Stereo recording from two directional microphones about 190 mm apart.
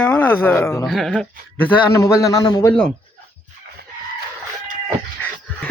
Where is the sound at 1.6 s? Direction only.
10° left (ahead or behind).